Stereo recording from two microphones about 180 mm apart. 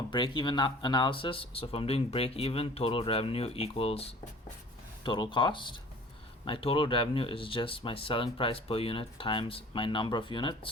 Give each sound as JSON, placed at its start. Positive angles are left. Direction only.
{"t": 0.1, "sound": "speech", "side_deg": 25}